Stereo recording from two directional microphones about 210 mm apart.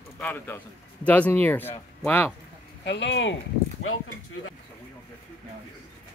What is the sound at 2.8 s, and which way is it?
Speech, 55° left (ahead or behind).